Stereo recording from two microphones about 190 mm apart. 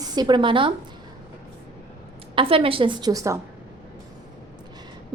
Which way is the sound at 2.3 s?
30° right (ahead or behind).